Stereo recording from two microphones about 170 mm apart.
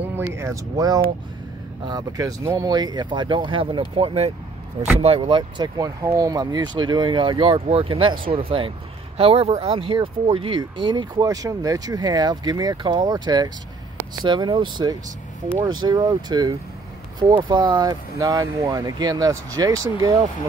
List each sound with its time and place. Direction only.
0.1 s speech: 15° right (ahead or behind)